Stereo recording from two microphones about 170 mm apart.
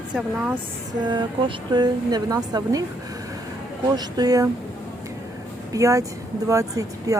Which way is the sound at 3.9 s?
25° right (ahead or behind).